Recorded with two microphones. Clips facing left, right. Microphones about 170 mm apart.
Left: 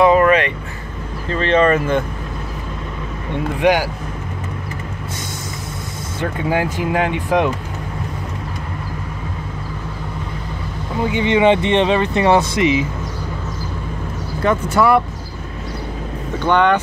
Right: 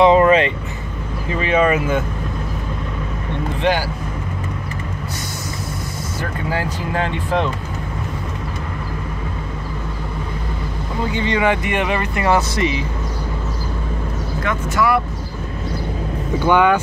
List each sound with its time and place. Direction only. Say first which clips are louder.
0.0 s vehicle: right 1 dB; 25° right (ahead or behind)
1.3 s speech: left 2 dB; 10° right (ahead or behind)
3.6 s speech: left 4 dB; 15° left (ahead or behind)
6.5 s speech: left 4 dB; 15° left (ahead or behind)
11.1 s speech: left 5 dB; 20° left (ahead or behind)
14.4 s speech: left 5 dB; 30° left (ahead or behind)
16.3 s speech: even; 10° right (ahead or behind)